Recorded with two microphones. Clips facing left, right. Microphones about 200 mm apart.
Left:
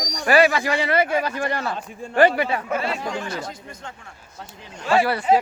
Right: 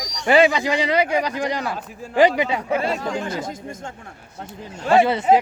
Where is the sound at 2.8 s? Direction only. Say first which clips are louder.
Right 3 dB; 45° right (ahead or behind).